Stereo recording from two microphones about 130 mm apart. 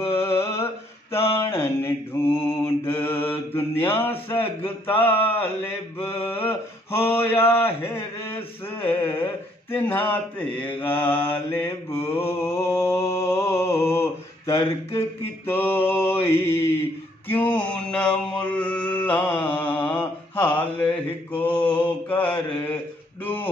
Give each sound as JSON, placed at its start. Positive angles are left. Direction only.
{"t": 0.0, "sound": "a sound", "side_deg": 20}
{"t": 1.1, "sound": "mantra", "side_deg": 20}
{"t": 19.4, "sound": "mantra", "side_deg": 40}
{"t": 20.0, "sound": "mantra", "side_deg": 15}
{"t": 20.5, "sound": "mantra", "side_deg": 40}
{"t": 21.4, "sound": "mantra", "side_deg": 10}